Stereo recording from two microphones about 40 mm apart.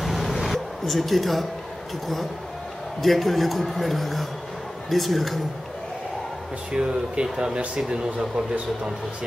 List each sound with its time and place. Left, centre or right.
0.0 s a sound: centre
3.0 s a man's voice: centre
6.7 s speech: right